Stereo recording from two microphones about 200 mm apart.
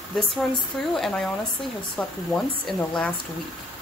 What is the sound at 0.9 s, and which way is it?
Speech, centre (ahead or behind).